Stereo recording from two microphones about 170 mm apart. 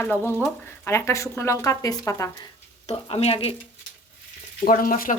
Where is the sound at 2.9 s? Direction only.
35° left (ahead or behind).